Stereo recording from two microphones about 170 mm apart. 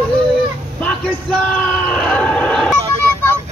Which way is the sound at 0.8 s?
5° left (ahead or behind).